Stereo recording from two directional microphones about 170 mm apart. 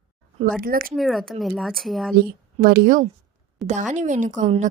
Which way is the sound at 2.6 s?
60° right (ahead or behind).